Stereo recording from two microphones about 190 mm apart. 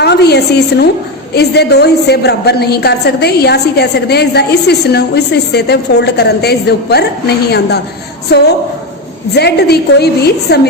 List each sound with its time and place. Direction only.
0.0 s a woman's voice: 60° left (ahead or behind)
9.3 s a woman's voice: 60° left (ahead or behind)